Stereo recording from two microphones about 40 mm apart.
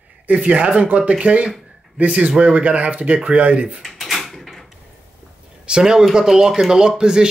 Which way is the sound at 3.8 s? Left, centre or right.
Centre.